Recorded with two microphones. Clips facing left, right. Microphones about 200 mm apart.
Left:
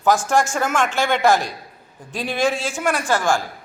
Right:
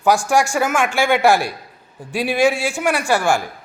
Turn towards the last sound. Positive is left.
turn(degrees=-15)  # may be behind; listen again after turning